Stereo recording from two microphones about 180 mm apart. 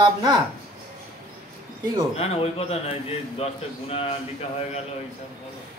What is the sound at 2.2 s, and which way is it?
A man's voice, 35° left (ahead or behind).